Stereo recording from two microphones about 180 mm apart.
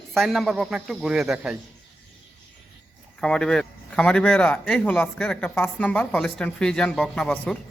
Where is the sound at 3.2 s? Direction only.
5° left (ahead or behind).